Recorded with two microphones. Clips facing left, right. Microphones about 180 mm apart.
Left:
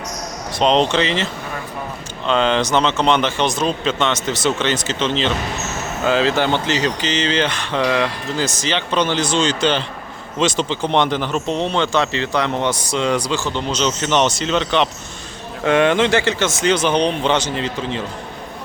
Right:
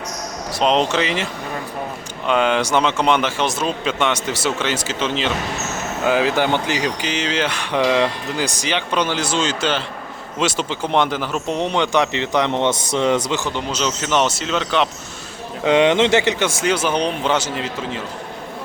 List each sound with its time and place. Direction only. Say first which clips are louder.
0.6 s speech: left 2 dB; 5° right (ahead or behind)
15.6 s speech: right 1 dB; 20° right (ahead or behind)